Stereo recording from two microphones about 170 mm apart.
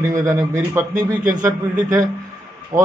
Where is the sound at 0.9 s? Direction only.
50° right (ahead or behind).